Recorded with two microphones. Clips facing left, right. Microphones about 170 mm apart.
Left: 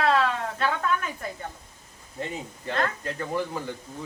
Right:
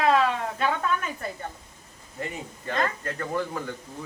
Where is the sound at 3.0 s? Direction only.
15° left (ahead or behind).